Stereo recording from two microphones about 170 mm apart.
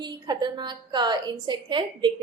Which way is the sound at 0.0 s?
25° right (ahead or behind).